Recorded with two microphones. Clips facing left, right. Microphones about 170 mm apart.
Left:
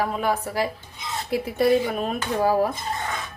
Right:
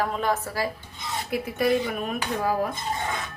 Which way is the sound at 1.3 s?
30° left (ahead or behind).